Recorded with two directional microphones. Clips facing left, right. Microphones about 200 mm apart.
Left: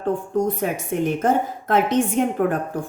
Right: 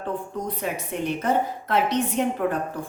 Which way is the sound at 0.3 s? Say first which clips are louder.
Left 7 dB; 50° left (ahead or behind).